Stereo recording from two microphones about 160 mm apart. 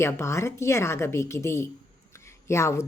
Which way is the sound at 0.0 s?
15° left (ahead or behind).